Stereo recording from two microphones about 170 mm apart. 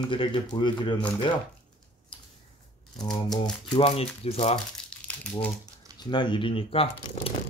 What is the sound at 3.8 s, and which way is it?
Speech, 35° left (ahead or behind).